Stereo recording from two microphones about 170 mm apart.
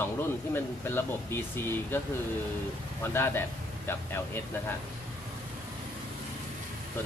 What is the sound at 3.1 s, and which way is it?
Speech, 15° left (ahead or behind).